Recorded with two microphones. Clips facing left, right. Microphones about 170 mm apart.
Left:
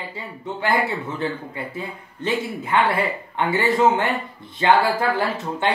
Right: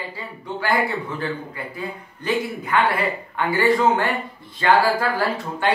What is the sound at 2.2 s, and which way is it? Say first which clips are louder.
Speech: right 1 dB; 25° left (ahead or behind).